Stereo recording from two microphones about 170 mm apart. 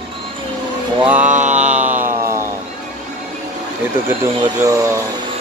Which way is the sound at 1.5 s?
10° right (ahead or behind).